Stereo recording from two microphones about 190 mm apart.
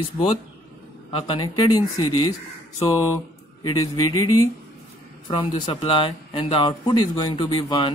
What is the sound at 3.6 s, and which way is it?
Speech, 15° left (ahead or behind).